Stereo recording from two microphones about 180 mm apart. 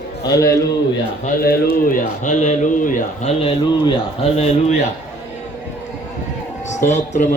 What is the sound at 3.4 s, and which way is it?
A man's voice, 30° left (ahead or behind).